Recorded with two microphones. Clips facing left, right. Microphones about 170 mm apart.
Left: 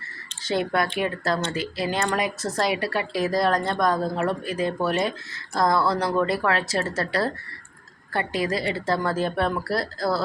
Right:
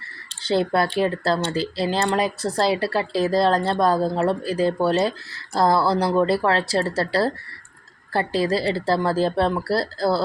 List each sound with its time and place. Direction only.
0.4 s speech: 30° right (ahead or behind)